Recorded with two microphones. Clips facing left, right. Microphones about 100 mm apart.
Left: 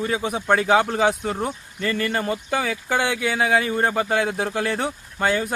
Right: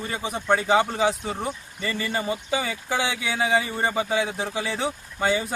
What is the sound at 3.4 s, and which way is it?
Speech, 70° left (ahead or behind).